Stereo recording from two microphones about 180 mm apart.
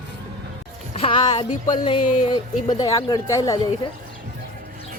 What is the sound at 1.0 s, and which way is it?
Speech, 25° left (ahead or behind).